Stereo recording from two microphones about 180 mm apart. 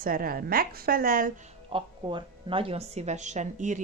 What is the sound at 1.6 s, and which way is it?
Speech, 30° right (ahead or behind).